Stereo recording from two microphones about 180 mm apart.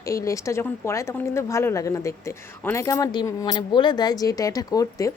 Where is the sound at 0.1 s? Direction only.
15° left (ahead or behind).